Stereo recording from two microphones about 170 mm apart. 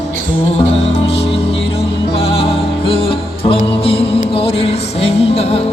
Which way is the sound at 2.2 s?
35° left (ahead or behind).